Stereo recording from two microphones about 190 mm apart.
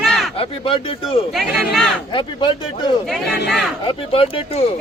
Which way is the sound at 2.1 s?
25° left (ahead or behind).